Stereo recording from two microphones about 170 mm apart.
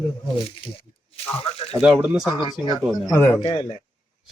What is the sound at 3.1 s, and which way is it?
Speech, 15° left (ahead or behind).